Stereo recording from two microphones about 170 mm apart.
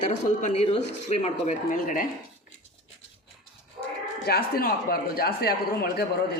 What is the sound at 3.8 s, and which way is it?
Dog, 25° right (ahead or behind).